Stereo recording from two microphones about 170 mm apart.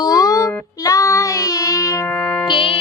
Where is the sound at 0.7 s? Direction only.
20° left (ahead or behind).